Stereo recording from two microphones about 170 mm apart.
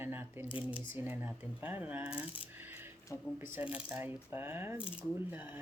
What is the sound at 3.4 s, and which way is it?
Speech, 10° right (ahead or behind).